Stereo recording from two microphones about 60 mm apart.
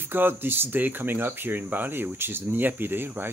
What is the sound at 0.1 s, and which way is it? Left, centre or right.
Speech, right.